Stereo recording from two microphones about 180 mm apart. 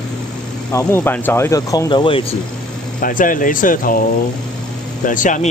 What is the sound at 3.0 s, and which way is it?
Speech, 50° left (ahead or behind).